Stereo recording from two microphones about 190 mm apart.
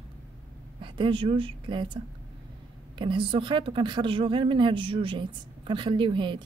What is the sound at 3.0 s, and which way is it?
A woman's voice, 25° right (ahead or behind).